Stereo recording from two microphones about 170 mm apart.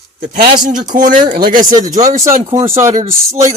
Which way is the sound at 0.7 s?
50° right (ahead or behind).